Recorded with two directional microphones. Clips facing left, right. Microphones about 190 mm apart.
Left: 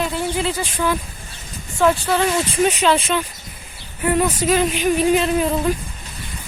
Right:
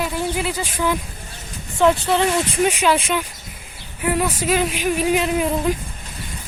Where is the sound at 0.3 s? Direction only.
10° right (ahead or behind).